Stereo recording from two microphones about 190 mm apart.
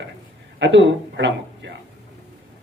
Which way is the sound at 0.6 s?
70° right (ahead or behind).